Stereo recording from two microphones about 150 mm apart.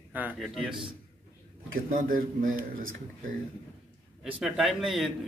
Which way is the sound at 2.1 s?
65° right (ahead or behind).